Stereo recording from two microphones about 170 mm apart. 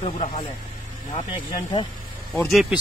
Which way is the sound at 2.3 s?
Centre (ahead or behind).